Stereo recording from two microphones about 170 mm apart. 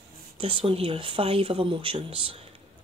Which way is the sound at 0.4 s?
30° right (ahead or behind).